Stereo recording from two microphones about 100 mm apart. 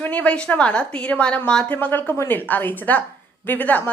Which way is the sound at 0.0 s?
15° left (ahead or behind).